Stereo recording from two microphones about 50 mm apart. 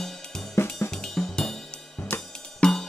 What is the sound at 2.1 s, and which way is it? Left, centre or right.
Cymbal, left.